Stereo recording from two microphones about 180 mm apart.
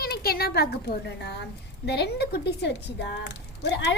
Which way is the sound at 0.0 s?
60° left (ahead or behind).